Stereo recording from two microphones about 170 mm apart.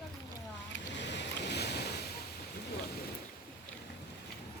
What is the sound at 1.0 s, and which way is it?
Boat, 90° left.